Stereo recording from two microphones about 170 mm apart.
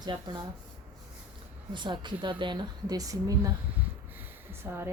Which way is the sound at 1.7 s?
25° right (ahead or behind).